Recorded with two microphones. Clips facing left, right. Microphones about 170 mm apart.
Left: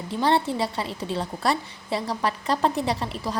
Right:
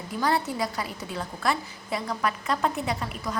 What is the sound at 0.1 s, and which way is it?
A woman's voice, 30° left (ahead or behind).